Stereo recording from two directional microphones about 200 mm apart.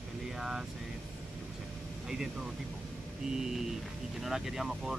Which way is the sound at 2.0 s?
Centre (ahead or behind).